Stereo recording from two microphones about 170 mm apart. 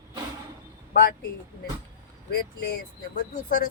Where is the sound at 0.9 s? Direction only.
55° left (ahead or behind).